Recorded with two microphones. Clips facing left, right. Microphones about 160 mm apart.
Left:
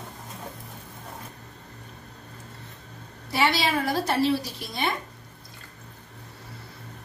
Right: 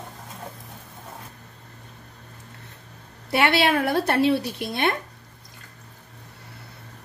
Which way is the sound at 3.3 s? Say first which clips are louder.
Right 4 dB; 65° right (ahead or behind).